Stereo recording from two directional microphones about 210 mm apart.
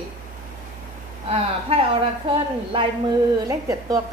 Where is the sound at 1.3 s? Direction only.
30° right (ahead or behind).